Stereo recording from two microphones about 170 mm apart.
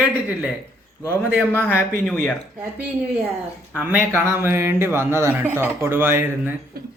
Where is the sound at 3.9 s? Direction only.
15° right (ahead or behind).